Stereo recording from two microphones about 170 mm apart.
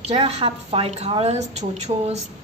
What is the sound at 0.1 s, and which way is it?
A woman's voice, 35° right (ahead or behind).